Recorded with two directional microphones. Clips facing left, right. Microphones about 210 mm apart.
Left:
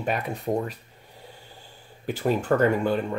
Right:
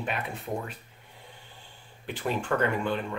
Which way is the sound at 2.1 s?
40° left (ahead or behind).